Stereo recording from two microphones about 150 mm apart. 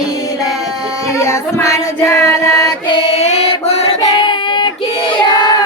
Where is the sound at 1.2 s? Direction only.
20° left (ahead or behind).